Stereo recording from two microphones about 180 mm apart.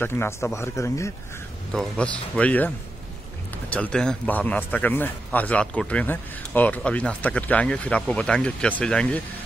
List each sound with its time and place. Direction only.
0.0 s a man's voice: 15° left (ahead or behind)
1.7 s a man's voice: 5° left (ahead or behind)
3.7 s a man's voice: 5° left (ahead or behind)